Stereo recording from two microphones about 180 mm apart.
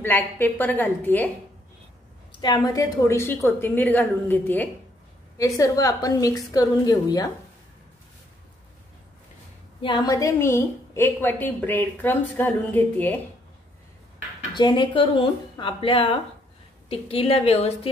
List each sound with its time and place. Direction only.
0.0 s a woman's voice: 10° left (ahead or behind)
2.3 s a woman's voice: 25° left (ahead or behind)
9.8 s a woman's voice: 25° left (ahead or behind); by 13.2 s 10° left (ahead or behind)
14.5 s a woman's voice: 25° left (ahead or behind)